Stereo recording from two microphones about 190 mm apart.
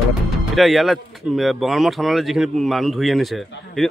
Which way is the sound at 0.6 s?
Centre (ahead or behind).